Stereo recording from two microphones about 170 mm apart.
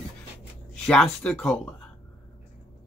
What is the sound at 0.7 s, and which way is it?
Speech, 5° left (ahead or behind).